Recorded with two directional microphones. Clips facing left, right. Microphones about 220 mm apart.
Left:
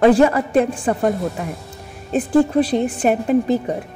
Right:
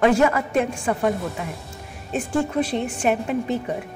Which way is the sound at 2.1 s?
35° left (ahead or behind).